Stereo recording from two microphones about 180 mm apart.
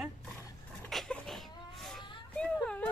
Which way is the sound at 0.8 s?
Centre (ahead or behind).